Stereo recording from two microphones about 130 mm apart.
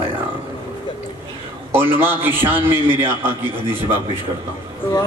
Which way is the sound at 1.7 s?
15° right (ahead or behind).